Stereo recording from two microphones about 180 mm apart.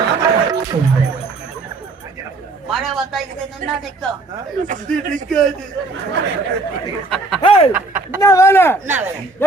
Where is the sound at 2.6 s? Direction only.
Centre (ahead or behind).